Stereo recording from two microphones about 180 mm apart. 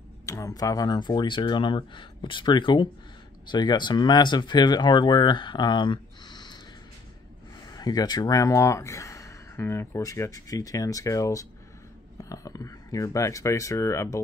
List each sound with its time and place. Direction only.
0.3 s speech: 20° left (ahead or behind)
7.7 s speech: 20° left (ahead or behind)